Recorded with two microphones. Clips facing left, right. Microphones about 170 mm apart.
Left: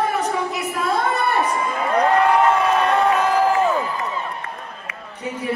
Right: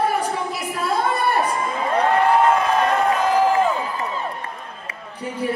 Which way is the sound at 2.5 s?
35° right (ahead or behind).